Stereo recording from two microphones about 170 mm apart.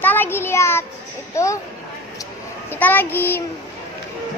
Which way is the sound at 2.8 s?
10° left (ahead or behind).